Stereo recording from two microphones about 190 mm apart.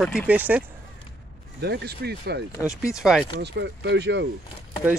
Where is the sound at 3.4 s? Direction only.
65° right (ahead or behind).